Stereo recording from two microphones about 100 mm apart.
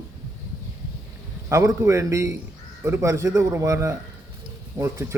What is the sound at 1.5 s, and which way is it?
A man's voice, 30° right (ahead or behind).